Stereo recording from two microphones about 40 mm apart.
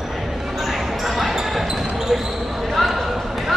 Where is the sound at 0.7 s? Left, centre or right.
Centre.